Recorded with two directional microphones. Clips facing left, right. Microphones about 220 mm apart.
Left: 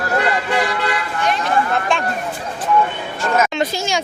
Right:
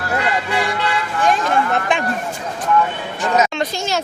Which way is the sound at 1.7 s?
15° right (ahead or behind).